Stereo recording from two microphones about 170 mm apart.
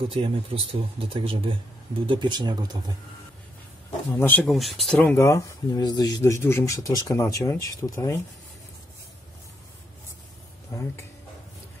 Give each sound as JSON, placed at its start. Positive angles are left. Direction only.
{"t": 0.1, "sound": "speech", "side_deg": -30}
{"t": 4.1, "sound": "speech", "side_deg": 10}
{"t": 5.1, "sound": "speech", "side_deg": 15}